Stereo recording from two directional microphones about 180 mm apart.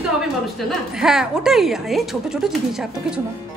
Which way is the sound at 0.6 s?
Centre (ahead or behind).